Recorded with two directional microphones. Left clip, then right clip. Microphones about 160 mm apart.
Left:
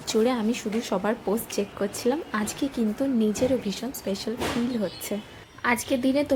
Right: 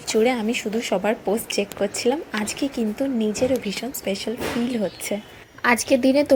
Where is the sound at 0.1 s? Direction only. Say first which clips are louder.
Right 4 dB; centre (ahead or behind).